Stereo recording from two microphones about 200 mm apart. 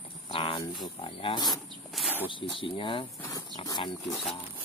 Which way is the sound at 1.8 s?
Centre (ahead or behind).